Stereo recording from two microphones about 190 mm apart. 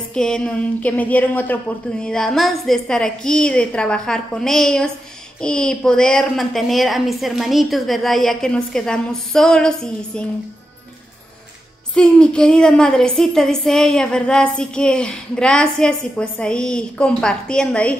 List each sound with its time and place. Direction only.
0.1 s a woman's voice: 5° left (ahead or behind)
11.9 s a woman's voice: 5° left (ahead or behind)